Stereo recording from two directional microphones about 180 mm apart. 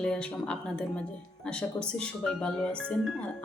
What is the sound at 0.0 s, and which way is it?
Speech, 5° left (ahead or behind).